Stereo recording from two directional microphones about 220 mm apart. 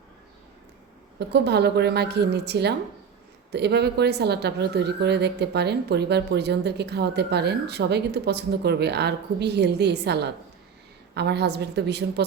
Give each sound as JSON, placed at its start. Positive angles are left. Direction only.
{"t": 1.3, "sound": "a woman's voice", "side_deg": -50}